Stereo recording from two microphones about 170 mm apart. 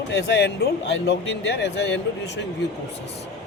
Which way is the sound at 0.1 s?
90° left.